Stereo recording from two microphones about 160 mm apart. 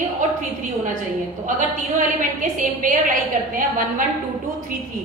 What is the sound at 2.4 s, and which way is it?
Speech, 55° right (ahead or behind).